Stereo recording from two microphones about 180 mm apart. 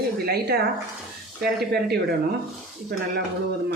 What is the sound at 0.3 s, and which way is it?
Speech, 60° right (ahead or behind).